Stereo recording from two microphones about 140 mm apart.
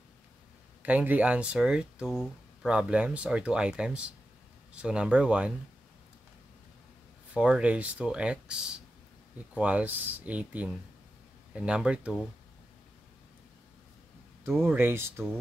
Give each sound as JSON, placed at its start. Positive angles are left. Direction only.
{"t": 0.8, "sound": "speech", "side_deg": -10}
{"t": 7.3, "sound": "speech", "side_deg": -5}
{"t": 14.6, "sound": "speech", "side_deg": -15}